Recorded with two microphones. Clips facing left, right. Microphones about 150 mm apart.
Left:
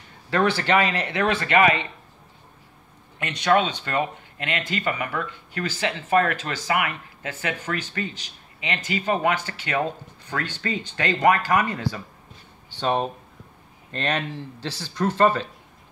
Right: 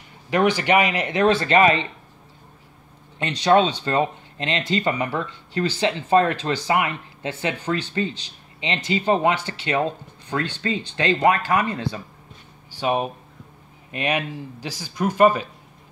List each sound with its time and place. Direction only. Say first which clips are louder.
0.3 s speech: right 2 dB; 15° right (ahead or behind)
1.3 s speech: even; 30° right (ahead or behind)
3.2 s speech: right 3 dB; 25° right (ahead or behind)
12.7 s speech: right 1 dB; 10° right (ahead or behind)